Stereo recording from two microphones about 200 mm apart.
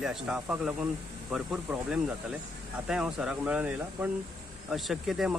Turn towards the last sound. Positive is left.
turn(degrees=0)  # may be behind; listen again after turning